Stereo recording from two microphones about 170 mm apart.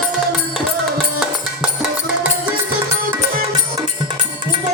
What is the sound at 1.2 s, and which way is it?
Music, 5° right (ahead or behind).